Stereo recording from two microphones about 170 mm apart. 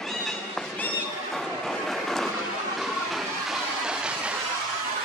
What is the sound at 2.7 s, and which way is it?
Train, centre (ahead or behind).